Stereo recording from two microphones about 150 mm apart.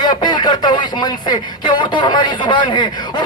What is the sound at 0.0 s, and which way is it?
Speech, 30° left (ahead or behind).